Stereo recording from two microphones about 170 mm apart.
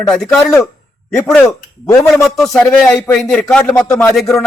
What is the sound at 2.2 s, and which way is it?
A man's voice, centre (ahead or behind).